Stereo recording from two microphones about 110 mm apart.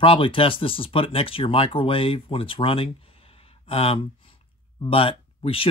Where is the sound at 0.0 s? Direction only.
55° left (ahead or behind).